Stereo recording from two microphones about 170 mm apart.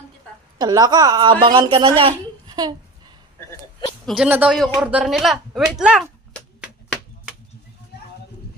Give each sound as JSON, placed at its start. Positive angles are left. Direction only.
{"t": 0.6, "sound": "a woman's voice", "side_deg": -25}
{"t": 4.0, "sound": "speech", "side_deg": 0}
{"t": 4.3, "sound": "speech", "side_deg": -10}
{"t": 4.5, "sound": "a woman's voice", "side_deg": 0}
{"t": 6.6, "sound": "a sound", "side_deg": -5}